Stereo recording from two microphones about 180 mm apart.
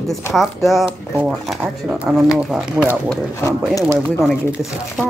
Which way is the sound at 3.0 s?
15° left (ahead or behind).